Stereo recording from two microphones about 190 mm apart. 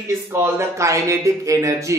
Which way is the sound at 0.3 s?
15° right (ahead or behind).